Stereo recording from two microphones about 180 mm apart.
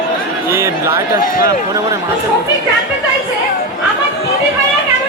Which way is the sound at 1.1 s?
50° left (ahead or behind).